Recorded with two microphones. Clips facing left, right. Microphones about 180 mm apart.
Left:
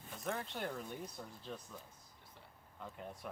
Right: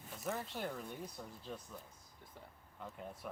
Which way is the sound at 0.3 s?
5° right (ahead or behind).